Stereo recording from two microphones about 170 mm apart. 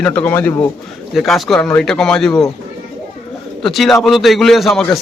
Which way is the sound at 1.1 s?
Centre (ahead or behind).